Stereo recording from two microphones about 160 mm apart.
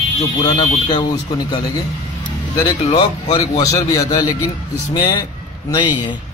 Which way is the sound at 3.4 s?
20° left (ahead or behind).